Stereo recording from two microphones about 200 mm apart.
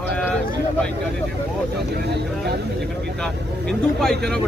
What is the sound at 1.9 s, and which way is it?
Speech, 50° right (ahead or behind).